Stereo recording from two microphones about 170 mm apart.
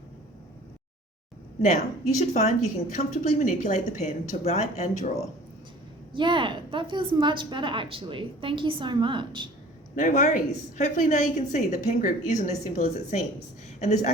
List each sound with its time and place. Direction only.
1.6 s a woman's voice: 45° left (ahead or behind)
6.1 s a woman's voice: 30° right (ahead or behind)
9.9 s a woman's voice: 50° left (ahead or behind)